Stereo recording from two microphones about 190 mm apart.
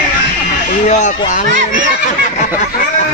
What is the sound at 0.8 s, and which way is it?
Speech, 40° left (ahead or behind).